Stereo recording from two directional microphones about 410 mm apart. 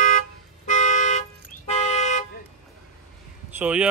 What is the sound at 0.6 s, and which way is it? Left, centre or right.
Toot, centre.